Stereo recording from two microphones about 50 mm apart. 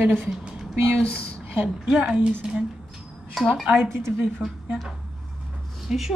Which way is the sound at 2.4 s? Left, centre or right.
Centre.